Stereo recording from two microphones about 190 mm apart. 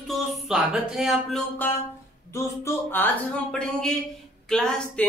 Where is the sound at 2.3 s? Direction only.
15° left (ahead or behind).